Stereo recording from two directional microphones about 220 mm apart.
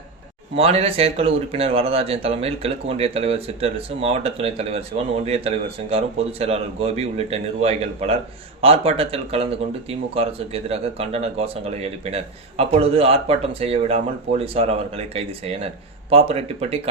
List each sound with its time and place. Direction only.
0.5 s speech: 25° right (ahead or behind)